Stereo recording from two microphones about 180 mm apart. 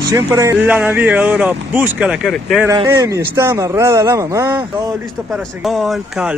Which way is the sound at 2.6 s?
20° right (ahead or behind).